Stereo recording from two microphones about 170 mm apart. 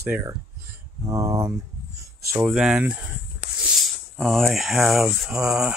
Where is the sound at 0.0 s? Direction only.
15° right (ahead or behind).